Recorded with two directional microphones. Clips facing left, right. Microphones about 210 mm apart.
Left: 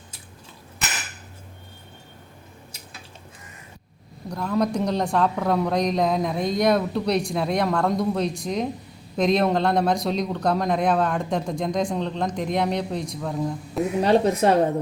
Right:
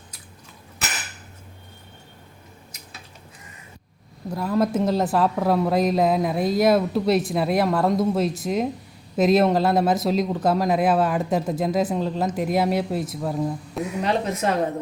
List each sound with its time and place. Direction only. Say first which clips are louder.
4.3 s a woman's voice: right 2 dB; 5° right (ahead or behind)
14.0 s a woman's voice: left 5 dB; 35° left (ahead or behind)